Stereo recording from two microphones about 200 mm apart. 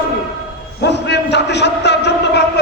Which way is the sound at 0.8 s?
60° left (ahead or behind).